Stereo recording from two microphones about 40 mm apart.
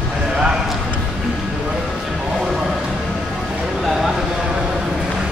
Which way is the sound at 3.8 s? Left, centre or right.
Centre.